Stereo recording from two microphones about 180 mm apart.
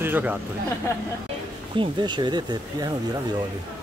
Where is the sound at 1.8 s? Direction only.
25° right (ahead or behind).